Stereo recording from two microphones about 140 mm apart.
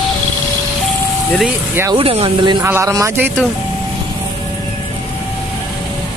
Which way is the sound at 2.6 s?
20° right (ahead or behind).